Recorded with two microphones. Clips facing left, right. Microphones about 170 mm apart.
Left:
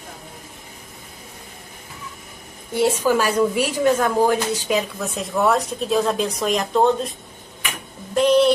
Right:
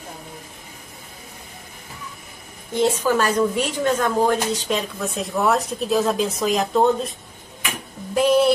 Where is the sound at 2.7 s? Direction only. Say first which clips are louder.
Left 1 dB; 10° left (ahead or behind).